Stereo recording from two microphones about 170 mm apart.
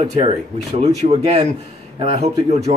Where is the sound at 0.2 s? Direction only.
40° right (ahead or behind).